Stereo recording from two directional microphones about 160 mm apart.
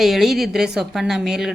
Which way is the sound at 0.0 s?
Centre (ahead or behind).